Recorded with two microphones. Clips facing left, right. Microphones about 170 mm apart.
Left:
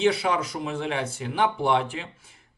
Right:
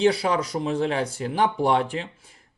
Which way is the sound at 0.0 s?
35° right (ahead or behind).